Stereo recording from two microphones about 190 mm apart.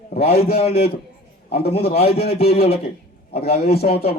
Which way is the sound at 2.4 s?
55° left (ahead or behind).